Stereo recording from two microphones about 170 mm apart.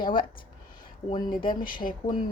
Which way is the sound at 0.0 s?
30° left (ahead or behind).